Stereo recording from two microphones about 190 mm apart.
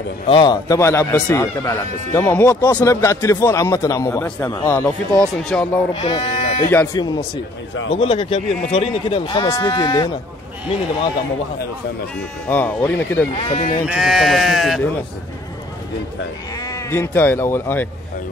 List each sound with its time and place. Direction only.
0.3 s speech: 25° left (ahead or behind); by 5.8 s 5° left (ahead or behind)
5.9 s speech: 25° left (ahead or behind)
6.7 s speech: 10° left (ahead or behind)
7.9 s a man's voice: 30° left (ahead or behind)
12.4 s speech: 10° left (ahead or behind)
13.3 s speech: 35° left (ahead or behind)
13.8 s speech: centre (ahead or behind)
16.5 s speech: 20° left (ahead or behind)